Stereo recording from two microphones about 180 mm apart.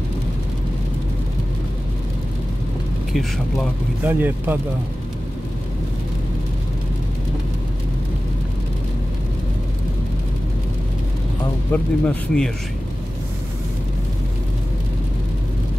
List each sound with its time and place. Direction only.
3.1 s a man's voice: centre (ahead or behind)
4.0 s speech: 10° right (ahead or behind)
11.7 s speech: 5° left (ahead or behind)